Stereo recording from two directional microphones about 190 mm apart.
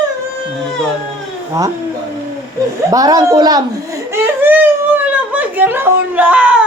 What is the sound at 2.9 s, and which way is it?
Speech, 20° right (ahead or behind).